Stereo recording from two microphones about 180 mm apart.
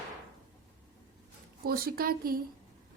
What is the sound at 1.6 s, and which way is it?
Speech, 55° right (ahead or behind).